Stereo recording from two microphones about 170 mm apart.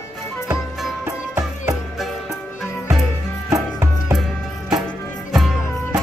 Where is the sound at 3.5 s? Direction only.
20° right (ahead or behind).